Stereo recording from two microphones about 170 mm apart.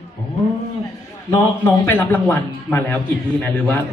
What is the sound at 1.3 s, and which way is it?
A man's voice, 15° left (ahead or behind).